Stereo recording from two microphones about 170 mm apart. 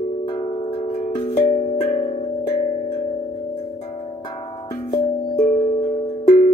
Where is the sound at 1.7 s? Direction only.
35° left (ahead or behind).